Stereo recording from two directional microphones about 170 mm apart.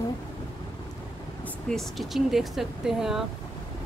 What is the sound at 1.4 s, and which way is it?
Speech, centre (ahead or behind).